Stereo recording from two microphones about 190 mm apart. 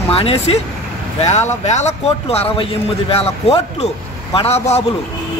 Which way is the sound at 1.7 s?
35° left (ahead or behind).